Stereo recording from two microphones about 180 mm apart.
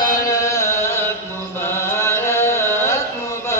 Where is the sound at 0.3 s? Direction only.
15° left (ahead or behind).